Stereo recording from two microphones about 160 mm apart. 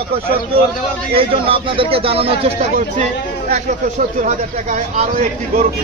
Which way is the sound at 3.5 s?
55° right (ahead or behind).